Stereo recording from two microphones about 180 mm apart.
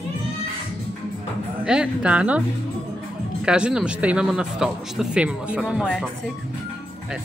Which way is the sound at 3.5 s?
5° right (ahead or behind).